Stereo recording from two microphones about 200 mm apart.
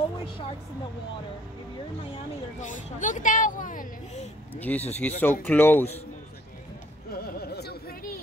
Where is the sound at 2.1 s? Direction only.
40° left (ahead or behind).